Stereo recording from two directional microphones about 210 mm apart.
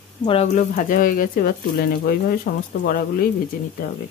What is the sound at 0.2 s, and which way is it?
Speech, 30° left (ahead or behind).